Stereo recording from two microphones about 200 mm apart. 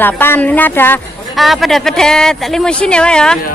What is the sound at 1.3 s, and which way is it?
Speech, centre (ahead or behind).